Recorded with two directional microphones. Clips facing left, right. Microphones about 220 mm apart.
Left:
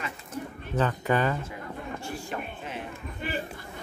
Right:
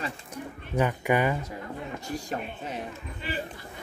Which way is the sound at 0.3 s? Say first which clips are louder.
Left 1 dB; 15° right (ahead or behind).